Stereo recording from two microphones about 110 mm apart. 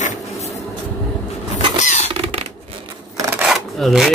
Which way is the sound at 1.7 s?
90° left.